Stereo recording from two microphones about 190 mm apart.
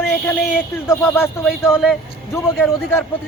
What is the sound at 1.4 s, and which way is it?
Speech, centre (ahead or behind).